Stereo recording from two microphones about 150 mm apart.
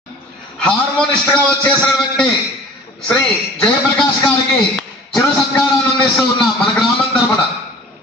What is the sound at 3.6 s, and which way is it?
Speech, 5° left (ahead or behind).